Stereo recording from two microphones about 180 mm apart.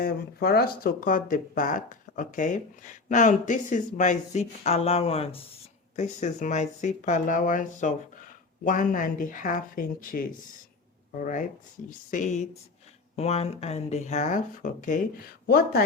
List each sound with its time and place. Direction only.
0.0 s speech: 55° left (ahead or behind)
15.4 s speech: 60° left (ahead or behind)